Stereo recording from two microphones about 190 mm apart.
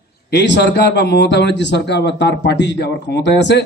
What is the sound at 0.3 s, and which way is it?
A man's voice, 65° left (ahead or behind).